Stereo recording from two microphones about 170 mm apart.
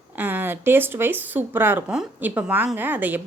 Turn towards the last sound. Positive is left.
turn(degrees=-10)  # may be behind; listen again after turning